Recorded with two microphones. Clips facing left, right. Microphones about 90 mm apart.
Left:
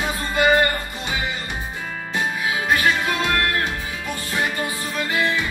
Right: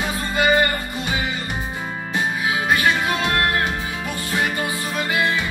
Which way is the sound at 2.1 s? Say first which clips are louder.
Right 1 dB; 5° right (ahead or behind).